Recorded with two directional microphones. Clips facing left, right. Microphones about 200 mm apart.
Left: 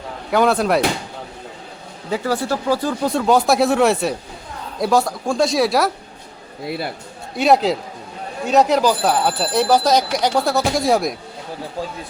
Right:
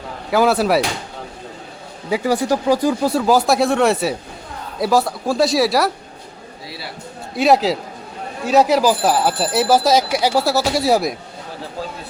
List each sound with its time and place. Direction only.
0.3 s speech: 5° right (ahead or behind)
2.0 s speech: 10° right (ahead or behind)
6.7 s a man's voice: 55° left (ahead or behind)
7.3 s speech: centre (ahead or behind)